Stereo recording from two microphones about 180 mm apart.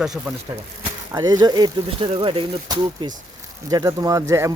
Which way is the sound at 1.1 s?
20° right (ahead or behind).